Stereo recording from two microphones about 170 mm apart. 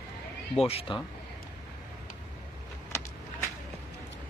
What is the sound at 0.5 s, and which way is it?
Speech, 35° left (ahead or behind).